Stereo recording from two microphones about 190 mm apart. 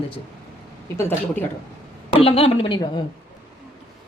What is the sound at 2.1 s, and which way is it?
Speech, 30° left (ahead or behind).